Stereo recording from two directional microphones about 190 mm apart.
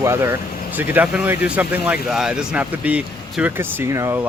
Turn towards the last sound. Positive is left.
turn(degrees=-15)  # may be behind; listen again after turning